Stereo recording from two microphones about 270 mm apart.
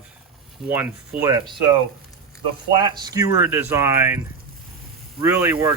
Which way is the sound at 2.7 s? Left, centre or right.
Centre.